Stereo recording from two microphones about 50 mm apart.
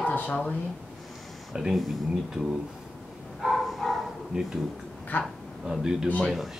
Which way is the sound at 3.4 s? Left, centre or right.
Centre.